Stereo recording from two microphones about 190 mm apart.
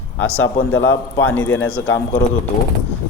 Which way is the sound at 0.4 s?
90° left.